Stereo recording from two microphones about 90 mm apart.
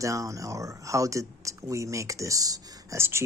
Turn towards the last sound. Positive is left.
turn(degrees=-40)  # may be behind; listen again after turning